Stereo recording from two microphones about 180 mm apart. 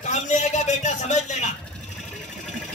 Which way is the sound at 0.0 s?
40° left (ahead or behind).